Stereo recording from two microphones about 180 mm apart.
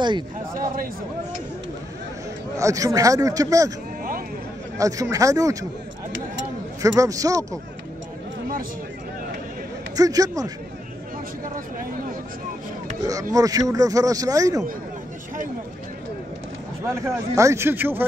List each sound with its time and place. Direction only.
2.5 s speech: 20° right (ahead or behind)
4.7 s speech: 20° right (ahead or behind)
6.8 s speech: 20° right (ahead or behind)
9.9 s speech: 20° right (ahead or behind)
13.0 s speech: 20° right (ahead or behind)
16.8 s a man's voice: 15° right (ahead or behind)